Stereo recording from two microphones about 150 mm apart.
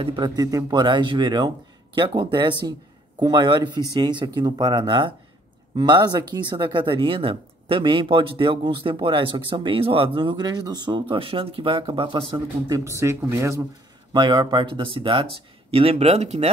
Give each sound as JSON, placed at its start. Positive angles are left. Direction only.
{"t": 0.0, "sound": "speech", "side_deg": -30}
{"t": 12.6, "sound": "speech", "side_deg": -20}
{"t": 14.1, "sound": "speech", "side_deg": -30}